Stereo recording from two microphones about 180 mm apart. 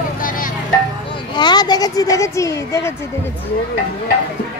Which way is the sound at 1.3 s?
25° left (ahead or behind).